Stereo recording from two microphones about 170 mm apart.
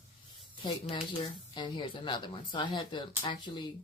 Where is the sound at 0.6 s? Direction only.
30° left (ahead or behind).